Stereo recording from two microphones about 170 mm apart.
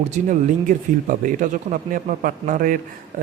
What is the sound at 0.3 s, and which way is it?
A man's voice, 50° right (ahead or behind).